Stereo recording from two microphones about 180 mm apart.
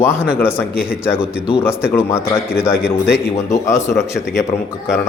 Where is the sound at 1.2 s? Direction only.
5° right (ahead or behind).